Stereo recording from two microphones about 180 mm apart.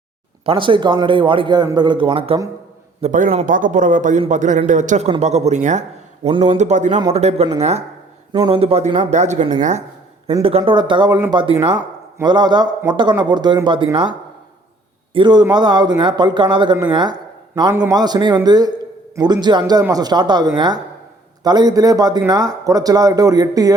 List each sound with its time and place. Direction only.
0.4 s speech: 30° right (ahead or behind)
3.0 s a man's voice: 45° right (ahead or behind)
6.6 s a man's voice: 40° right (ahead or behind)
8.3 s speech: 25° right (ahead or behind); by 9.8 s 40° right (ahead or behind)
10.6 s speech: 25° right (ahead or behind)